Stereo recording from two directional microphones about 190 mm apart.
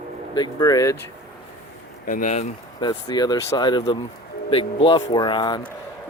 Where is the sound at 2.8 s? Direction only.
20° left (ahead or behind).